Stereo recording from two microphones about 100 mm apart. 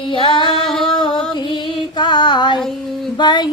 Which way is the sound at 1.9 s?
50° left (ahead or behind).